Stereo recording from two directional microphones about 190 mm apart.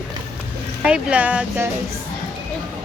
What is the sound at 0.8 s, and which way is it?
Speech, 5° right (ahead or behind).